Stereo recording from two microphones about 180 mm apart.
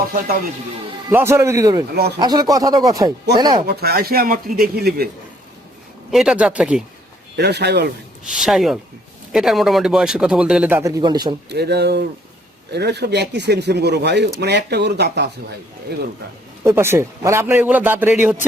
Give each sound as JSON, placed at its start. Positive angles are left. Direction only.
{"t": 1.1, "sound": "a man's voice", "side_deg": -15}
{"t": 3.7, "sound": "speech", "side_deg": -60}
{"t": 6.1, "sound": "a man's voice", "side_deg": -5}
{"t": 7.3, "sound": "speech", "side_deg": -65}
{"t": 8.2, "sound": "speech", "side_deg": -5}
{"t": 11.4, "sound": "speech", "side_deg": -65}
{"t": 16.6, "sound": "a man's voice", "side_deg": -15}